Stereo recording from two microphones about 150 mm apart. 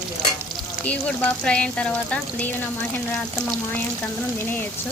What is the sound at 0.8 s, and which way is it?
Speech, 10° left (ahead or behind).